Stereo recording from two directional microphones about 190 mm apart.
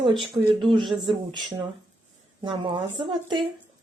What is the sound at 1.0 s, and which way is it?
A woman's voice, 25° right (ahead or behind).